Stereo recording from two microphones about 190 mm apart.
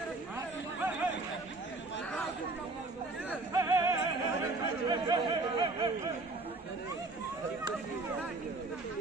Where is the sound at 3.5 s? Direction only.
15° right (ahead or behind).